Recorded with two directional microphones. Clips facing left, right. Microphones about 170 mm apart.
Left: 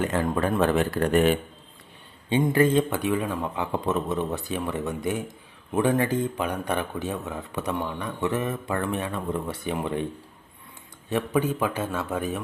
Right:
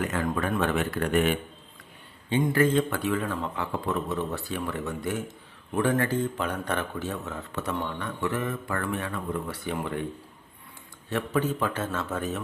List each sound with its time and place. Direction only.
0.0 s speech: 30° left (ahead or behind)
2.3 s speech: 20° left (ahead or behind)
11.1 s speech: 15° left (ahead or behind)